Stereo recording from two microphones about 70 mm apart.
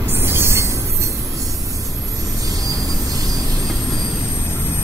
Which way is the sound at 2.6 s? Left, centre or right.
Right.